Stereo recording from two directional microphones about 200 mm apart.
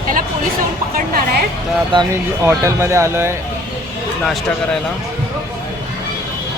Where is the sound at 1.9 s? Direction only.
25° right (ahead or behind).